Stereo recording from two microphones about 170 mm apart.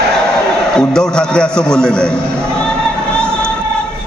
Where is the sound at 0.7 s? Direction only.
5° left (ahead or behind).